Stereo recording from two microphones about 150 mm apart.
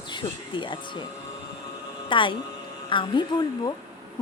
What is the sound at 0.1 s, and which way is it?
Speech, 35° left (ahead or behind).